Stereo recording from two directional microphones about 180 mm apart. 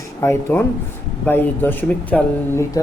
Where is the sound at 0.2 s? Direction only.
15° left (ahead or behind).